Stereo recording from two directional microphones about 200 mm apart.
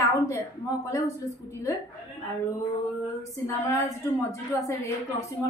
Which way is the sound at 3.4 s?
15° left (ahead or behind).